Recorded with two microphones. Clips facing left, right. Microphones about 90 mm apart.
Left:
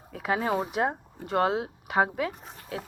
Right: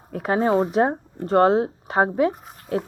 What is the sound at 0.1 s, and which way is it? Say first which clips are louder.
Speech: right 5 dB; 40° right (ahead or behind).